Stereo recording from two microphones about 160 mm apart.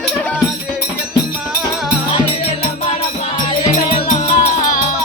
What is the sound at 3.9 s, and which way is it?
Music, 40° left (ahead or behind).